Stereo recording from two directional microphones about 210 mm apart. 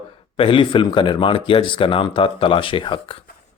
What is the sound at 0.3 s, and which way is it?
Speech, 25° left (ahead or behind).